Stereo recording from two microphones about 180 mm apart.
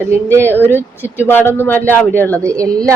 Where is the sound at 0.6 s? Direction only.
10° left (ahead or behind).